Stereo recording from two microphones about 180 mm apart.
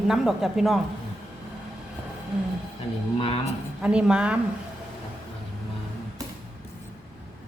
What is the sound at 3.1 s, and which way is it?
Speech, 30° left (ahead or behind).